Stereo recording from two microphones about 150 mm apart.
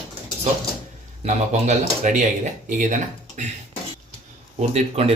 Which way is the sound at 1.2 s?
50° right (ahead or behind).